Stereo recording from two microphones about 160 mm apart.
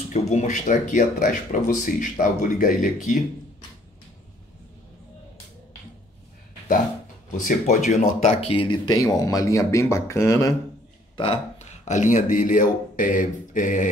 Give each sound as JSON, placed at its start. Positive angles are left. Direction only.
{"t": 0.1, "sound": "speech", "side_deg": 45}
{"t": 7.4, "sound": "speech", "side_deg": 45}
{"t": 11.1, "sound": "speech", "side_deg": 40}